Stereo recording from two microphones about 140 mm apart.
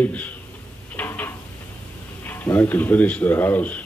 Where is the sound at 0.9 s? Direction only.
15° left (ahead or behind).